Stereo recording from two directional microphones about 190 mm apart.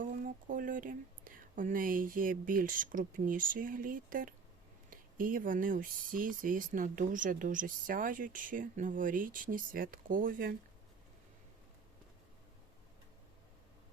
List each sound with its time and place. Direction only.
0.0 s speech: 45° right (ahead or behind)